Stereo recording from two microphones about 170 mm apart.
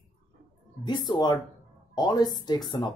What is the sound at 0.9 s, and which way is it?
Speech, 25° left (ahead or behind).